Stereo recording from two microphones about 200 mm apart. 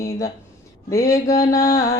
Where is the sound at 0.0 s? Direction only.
15° left (ahead or behind).